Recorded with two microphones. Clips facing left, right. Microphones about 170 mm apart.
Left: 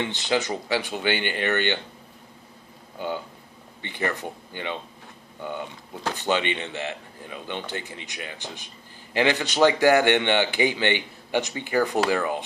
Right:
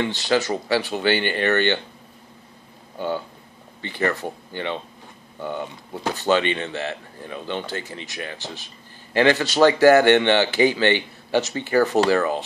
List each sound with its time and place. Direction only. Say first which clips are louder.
0.0 s speech: right 4 dB; 20° left (ahead or behind)
3.8 s speech: right 4 dB; 20° left (ahead or behind)
6.1 s speech: right 5 dB; 20° left (ahead or behind)